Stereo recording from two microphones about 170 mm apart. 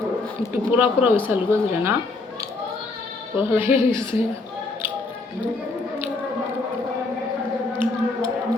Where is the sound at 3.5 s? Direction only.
10° right (ahead or behind).